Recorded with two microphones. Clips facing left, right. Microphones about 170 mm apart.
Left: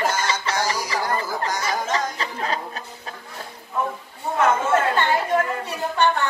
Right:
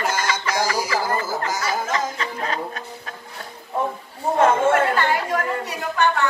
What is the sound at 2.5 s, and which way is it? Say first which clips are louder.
Music: right 1 dB; 35° left (ahead or behind).